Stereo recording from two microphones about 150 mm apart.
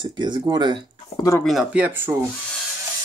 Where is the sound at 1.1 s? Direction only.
25° left (ahead or behind).